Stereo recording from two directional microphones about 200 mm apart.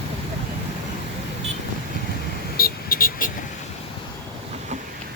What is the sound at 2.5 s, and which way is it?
Vehicle, 50° left (ahead or behind).